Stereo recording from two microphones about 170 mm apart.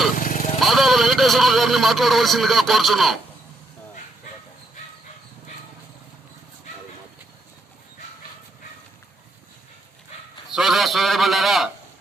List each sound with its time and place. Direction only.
0.2 s vehicle: 50° left (ahead or behind)
0.6 s speech: centre (ahead or behind)
10.5 s a man's voice: centre (ahead or behind)